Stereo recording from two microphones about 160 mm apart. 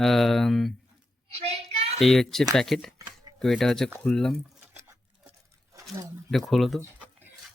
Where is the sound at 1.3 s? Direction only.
40° right (ahead or behind).